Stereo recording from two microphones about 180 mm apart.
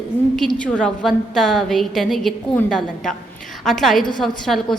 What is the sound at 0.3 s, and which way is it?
A woman's voice, 5° left (ahead or behind).